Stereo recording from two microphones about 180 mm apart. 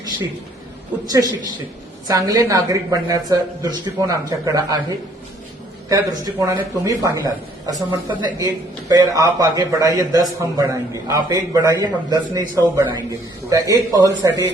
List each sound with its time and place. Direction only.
1.0 s a man's voice: 20° right (ahead or behind)
5.9 s a man's voice: 20° right (ahead or behind)